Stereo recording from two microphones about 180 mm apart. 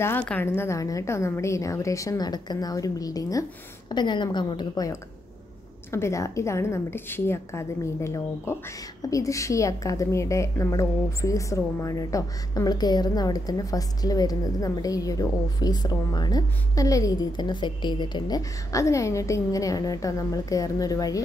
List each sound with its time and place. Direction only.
0.0 s a woman's voice: 10° left (ahead or behind)